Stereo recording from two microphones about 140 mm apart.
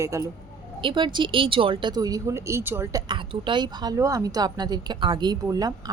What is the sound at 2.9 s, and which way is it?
Speech, 35° right (ahead or behind).